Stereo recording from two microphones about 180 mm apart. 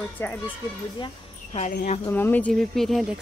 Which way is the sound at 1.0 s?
30° left (ahead or behind).